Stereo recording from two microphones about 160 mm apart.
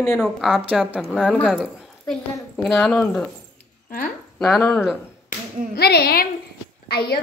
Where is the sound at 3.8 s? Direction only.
65° left (ahead or behind).